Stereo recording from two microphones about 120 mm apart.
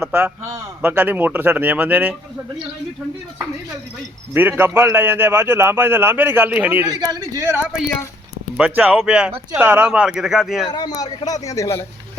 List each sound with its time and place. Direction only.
0.0 s speech: 10° right (ahead or behind)
4.4 s a man's voice: 15° right (ahead or behind)
6.9 s a man's voice: 35° right (ahead or behind)
8.5 s speech: 10° right (ahead or behind)
10.7 s a man's voice: 35° left (ahead or behind)